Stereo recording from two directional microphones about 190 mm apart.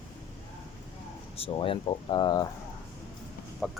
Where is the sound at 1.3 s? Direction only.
30° left (ahead or behind).